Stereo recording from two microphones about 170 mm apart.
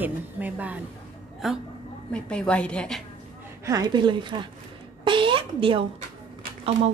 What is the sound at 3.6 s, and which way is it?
A woman's voice, 20° right (ahead or behind).